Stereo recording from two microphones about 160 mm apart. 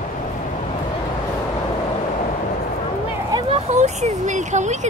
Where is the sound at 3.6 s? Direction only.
45° right (ahead or behind).